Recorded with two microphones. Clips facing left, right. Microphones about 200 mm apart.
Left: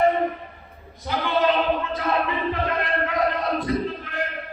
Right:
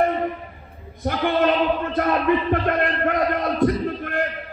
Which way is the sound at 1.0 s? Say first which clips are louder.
Right 2 dB; 55° right (ahead or behind).